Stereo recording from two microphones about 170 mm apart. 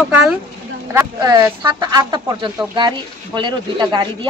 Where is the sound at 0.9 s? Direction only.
20° right (ahead or behind).